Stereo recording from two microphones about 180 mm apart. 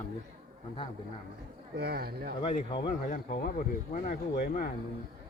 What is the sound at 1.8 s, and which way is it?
Speech, 60° right (ahead or behind).